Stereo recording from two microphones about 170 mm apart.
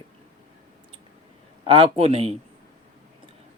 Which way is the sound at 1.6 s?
30° right (ahead or behind).